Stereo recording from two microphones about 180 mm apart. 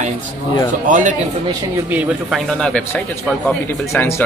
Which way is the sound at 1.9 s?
10° right (ahead or behind).